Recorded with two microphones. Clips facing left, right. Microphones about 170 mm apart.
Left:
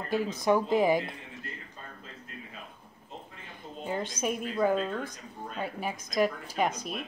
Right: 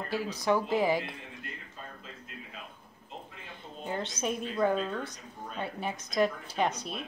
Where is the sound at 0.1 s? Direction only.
20° left (ahead or behind).